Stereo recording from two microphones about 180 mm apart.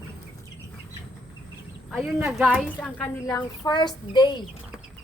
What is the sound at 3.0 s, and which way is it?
A woman's voice, 20° left (ahead or behind).